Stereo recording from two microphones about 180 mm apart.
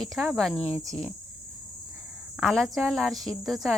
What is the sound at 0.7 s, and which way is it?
Speech, 20° right (ahead or behind).